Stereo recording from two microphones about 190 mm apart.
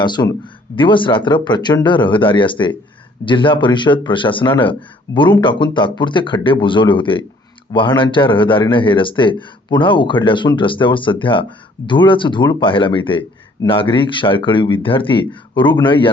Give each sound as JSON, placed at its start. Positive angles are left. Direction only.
{"t": 0.0, "sound": "speech", "side_deg": 25}